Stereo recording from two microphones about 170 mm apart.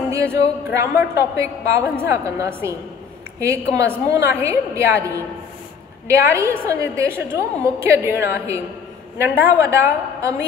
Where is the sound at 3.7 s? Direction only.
15° right (ahead or behind).